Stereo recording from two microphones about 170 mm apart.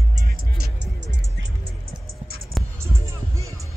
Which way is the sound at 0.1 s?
60° right (ahead or behind).